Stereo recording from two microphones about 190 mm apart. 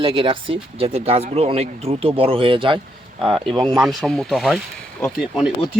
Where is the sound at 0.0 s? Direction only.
30° right (ahead or behind).